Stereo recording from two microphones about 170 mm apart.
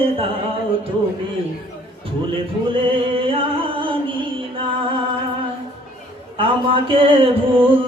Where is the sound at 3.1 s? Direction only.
30° right (ahead or behind).